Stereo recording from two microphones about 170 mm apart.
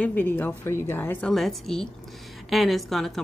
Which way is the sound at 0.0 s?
10° left (ahead or behind).